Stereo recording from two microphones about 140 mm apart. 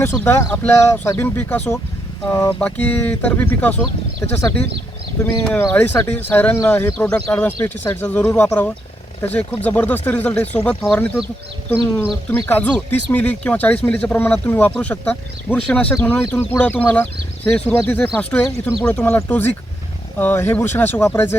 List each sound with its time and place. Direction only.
0.0 s speech: 15° left (ahead or behind)
5.2 s speech: 10° left (ahead or behind)
12.3 s speech: 15° left (ahead or behind)